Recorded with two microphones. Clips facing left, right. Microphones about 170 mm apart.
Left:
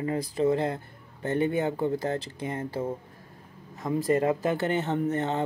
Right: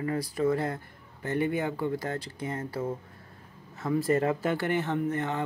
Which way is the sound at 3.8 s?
15° left (ahead or behind).